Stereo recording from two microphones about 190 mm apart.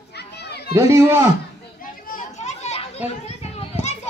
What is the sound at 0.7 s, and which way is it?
Speech, 15° right (ahead or behind).